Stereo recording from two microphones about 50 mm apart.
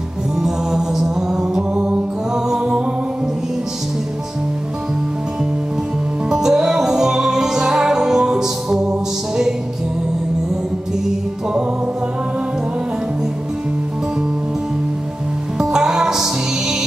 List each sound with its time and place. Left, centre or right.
0.4 s music: centre
1.7 s music: right
2.3 s music: centre
6.3 s music: centre
15.5 s music: centre